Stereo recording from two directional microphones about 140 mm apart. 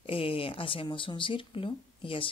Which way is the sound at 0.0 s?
40° left (ahead or behind).